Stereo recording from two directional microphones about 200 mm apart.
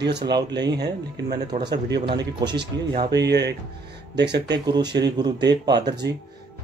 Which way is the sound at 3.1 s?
55° right (ahead or behind).